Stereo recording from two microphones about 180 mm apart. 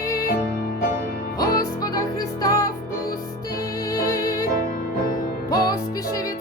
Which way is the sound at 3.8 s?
20° left (ahead or behind).